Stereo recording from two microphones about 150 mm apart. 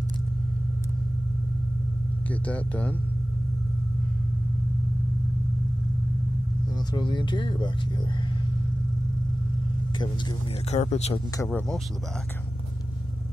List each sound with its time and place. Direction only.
2.4 s speech: 10° left (ahead or behind)
6.9 s speech: 30° left (ahead or behind)
10.7 s speech: 45° left (ahead or behind)
11.3 s speech: 15° left (ahead or behind)